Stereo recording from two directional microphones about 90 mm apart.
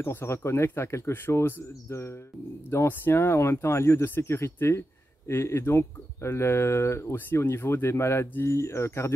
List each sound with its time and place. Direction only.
0.0 s speech: 30° left (ahead or behind)